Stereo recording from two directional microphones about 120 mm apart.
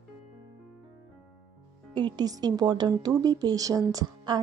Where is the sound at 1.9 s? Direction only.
40° right (ahead or behind).